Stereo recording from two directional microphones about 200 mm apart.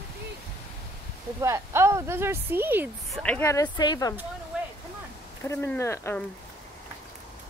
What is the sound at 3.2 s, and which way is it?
Speech, 10° left (ahead or behind).